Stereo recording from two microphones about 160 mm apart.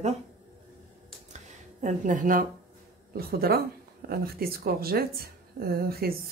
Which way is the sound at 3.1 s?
70° right (ahead or behind).